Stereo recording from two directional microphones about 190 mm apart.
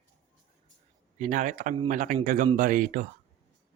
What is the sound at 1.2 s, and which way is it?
Speech, 40° right (ahead or behind).